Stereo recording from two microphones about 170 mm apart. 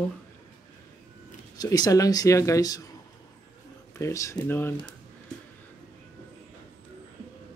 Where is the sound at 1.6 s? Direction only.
20° left (ahead or behind).